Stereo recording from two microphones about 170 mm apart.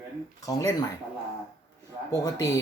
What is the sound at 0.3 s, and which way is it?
Speech, 20° left (ahead or behind).